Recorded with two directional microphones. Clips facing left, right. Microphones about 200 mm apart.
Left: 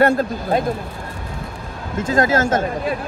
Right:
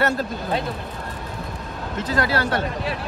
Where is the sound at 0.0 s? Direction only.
50° left (ahead or behind).